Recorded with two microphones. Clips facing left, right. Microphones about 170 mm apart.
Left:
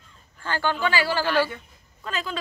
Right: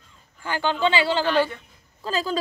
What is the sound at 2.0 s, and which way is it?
Speech, 35° right (ahead or behind).